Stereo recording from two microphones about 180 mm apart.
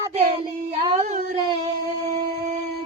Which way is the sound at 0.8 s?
30° right (ahead or behind).